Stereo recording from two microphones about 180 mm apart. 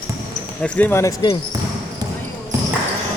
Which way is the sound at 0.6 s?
5° left (ahead or behind).